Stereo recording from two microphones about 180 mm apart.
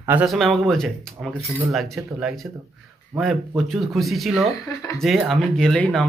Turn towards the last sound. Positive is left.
turn(degrees=5)  # may be behind; listen again after turning